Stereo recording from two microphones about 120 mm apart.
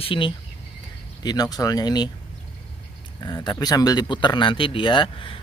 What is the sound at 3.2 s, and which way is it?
Speech, 35° left (ahead or behind).